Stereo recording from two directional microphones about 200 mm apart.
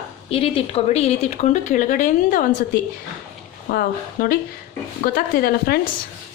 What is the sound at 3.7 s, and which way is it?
Speech, 50° left (ahead or behind).